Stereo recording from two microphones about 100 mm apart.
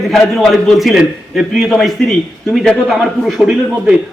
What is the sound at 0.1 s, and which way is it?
A man's voice, centre (ahead or behind).